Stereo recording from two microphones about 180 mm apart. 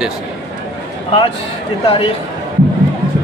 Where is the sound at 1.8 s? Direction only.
30° left (ahead or behind).